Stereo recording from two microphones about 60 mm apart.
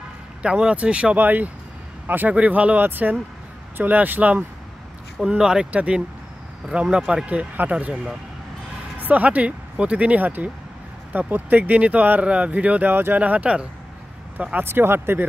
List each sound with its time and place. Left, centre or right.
0.4 s speech: centre
1.1 s speech: right
5.4 s speech: centre
7.2 s speech: right
7.9 s speech: centre
8.9 s speech: right
12.9 s speech: right
13.2 s speech: right
14.7 s speech: right